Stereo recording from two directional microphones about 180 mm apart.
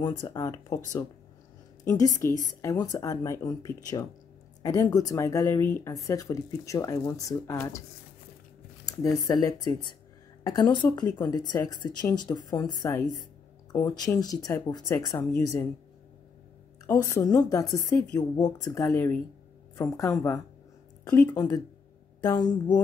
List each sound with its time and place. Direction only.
0.0 s a woman's voice: 20° left (ahead or behind)
8.8 s a sound: 20° left (ahead or behind)
9.2 s a woman's voice: 20° left (ahead or behind)
16.8 s a woman's voice: 20° left (ahead or behind)